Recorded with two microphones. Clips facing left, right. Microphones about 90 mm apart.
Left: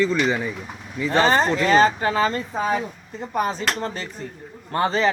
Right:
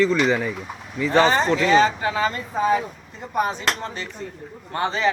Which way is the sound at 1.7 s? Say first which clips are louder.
Left 2 dB; 40° left (ahead or behind).